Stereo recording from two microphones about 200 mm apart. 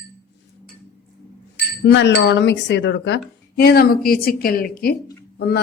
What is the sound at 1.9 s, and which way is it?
Speech, 60° left (ahead or behind).